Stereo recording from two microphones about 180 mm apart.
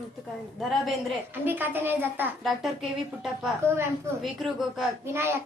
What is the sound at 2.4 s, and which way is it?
A woman's voice, centre (ahead or behind).